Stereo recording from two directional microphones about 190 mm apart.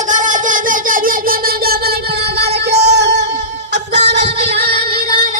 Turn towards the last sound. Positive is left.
turn(degrees=-55)  # may be behind; listen again after turning